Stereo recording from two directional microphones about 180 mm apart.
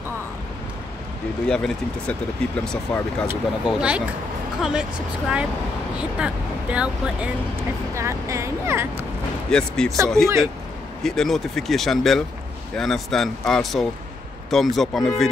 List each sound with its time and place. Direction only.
1.5 s speech: 5° left (ahead or behind)
3.6 s speech: 5° right (ahead or behind)
5.9 s speech: 5° right (ahead or behind)
9.5 s speech: 5° left (ahead or behind)